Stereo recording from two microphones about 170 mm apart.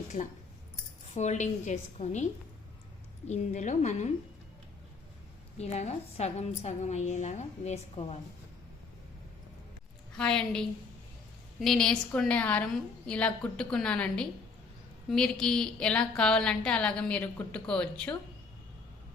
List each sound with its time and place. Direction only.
1.1 s a woman's voice: 45° left (ahead or behind)
5.5 s a woman's voice: 40° left (ahead or behind)
10.2 s a woman's voice: 5° left (ahead or behind)